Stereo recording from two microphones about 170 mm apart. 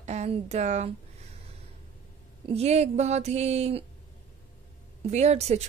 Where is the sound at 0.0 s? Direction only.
40° right (ahead or behind).